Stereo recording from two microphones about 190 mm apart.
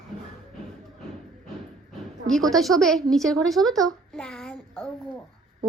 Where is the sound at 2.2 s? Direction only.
Centre (ahead or behind).